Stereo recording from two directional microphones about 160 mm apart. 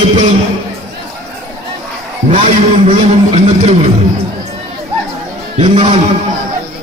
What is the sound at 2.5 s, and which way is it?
Speech, 45° right (ahead or behind).